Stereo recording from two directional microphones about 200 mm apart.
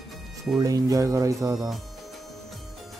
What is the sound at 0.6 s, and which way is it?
Speech, 20° right (ahead or behind).